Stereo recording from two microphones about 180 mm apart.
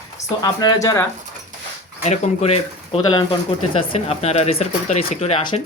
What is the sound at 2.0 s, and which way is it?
Speech, 35° left (ahead or behind).